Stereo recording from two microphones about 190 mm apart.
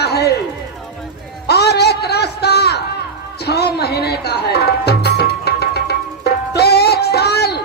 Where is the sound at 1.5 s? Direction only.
60° left (ahead or behind).